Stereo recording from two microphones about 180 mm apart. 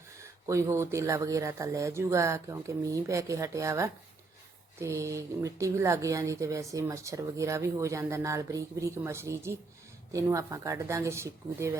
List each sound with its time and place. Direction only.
0.2 s speech: 15° right (ahead or behind)